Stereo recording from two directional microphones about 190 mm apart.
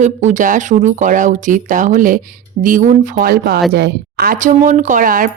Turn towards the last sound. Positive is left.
turn(degrees=-45)  # may be behind; listen again after turning